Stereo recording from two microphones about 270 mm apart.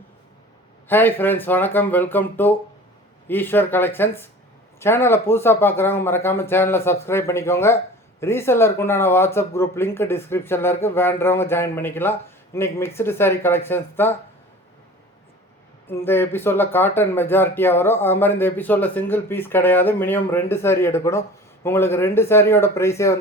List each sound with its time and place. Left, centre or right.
0.9 s speech: centre
16.0 s speech: centre